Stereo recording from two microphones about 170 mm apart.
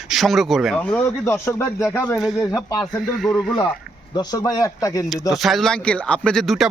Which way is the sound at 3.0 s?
Centre (ahead or behind).